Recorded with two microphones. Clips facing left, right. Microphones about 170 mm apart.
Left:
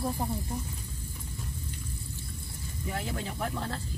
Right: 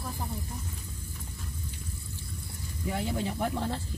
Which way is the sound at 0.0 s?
30° left (ahead or behind).